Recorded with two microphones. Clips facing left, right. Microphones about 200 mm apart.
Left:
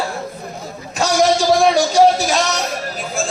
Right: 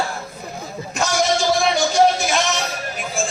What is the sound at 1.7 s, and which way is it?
Speech, 40° left (ahead or behind).